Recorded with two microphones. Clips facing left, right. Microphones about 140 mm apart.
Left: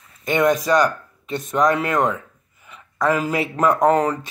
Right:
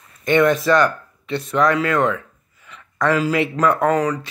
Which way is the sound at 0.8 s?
40° left (ahead or behind).